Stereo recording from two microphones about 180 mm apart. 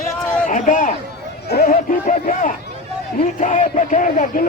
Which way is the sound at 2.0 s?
45° left (ahead or behind).